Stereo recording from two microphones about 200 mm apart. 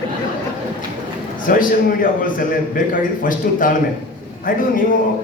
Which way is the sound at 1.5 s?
45° left (ahead or behind).